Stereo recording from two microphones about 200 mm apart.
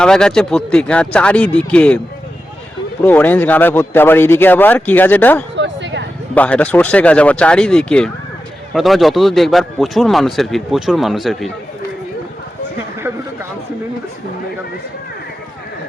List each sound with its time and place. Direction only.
0.0 s a man's voice: 5° left (ahead or behind)
3.0 s speech: 10° left (ahead or behind)
5.5 s a sound: 65° right (ahead or behind)
6.3 s a man's voice: 5° left (ahead or behind)